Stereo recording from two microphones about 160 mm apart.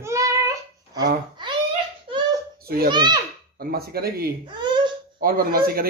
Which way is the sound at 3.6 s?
75° right (ahead or behind).